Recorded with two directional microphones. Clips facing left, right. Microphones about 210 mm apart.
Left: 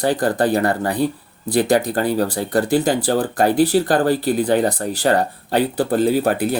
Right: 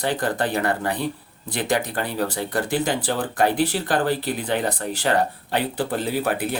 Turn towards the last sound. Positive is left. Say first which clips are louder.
# left 7 dB
turn(degrees=40)  # may be behind; listen again after turning